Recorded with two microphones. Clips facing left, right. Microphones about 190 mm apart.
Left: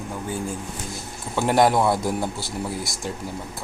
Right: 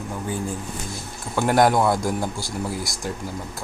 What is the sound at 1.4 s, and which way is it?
Speech, centre (ahead or behind).